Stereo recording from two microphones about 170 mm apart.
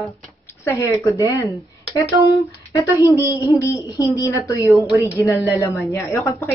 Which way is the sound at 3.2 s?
15° right (ahead or behind).